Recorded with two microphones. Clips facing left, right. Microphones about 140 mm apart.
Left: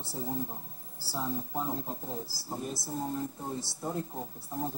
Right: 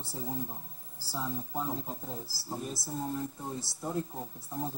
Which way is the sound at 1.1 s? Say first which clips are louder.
Left 2 dB; 5° left (ahead or behind).